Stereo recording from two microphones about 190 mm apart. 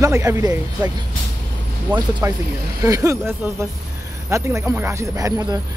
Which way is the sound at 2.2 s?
15° right (ahead or behind).